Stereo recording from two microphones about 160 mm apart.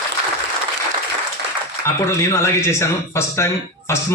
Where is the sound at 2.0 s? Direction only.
15° left (ahead or behind).